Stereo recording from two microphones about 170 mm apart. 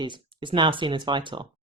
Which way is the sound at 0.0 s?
30° right (ahead or behind).